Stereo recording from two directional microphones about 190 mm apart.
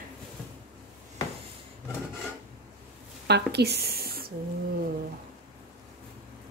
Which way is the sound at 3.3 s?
60° right (ahead or behind).